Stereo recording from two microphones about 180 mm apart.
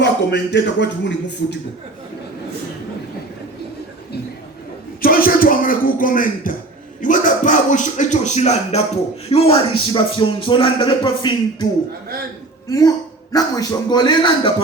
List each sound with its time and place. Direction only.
0.0 s speech: 75° left (ahead or behind)
4.9 s a man's voice: 55° left (ahead or behind); by 14.5 s 25° left (ahead or behind)